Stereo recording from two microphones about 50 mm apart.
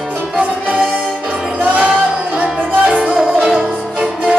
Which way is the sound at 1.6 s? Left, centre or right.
Right.